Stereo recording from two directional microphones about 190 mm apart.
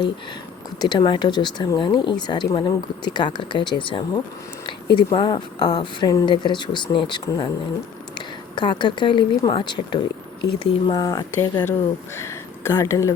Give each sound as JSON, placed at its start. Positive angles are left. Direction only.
{"t": 0.9, "sound": "a woman's voice", "side_deg": 25}
{"t": 8.5, "sound": "a woman's voice", "side_deg": 25}